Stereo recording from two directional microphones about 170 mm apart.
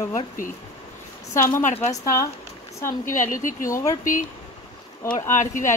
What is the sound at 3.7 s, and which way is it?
Speech, 20° left (ahead or behind).